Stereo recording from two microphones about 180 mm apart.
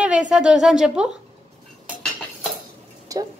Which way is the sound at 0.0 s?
5° right (ahead or behind).